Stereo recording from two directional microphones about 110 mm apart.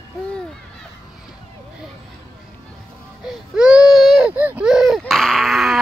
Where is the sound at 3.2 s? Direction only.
10° right (ahead or behind).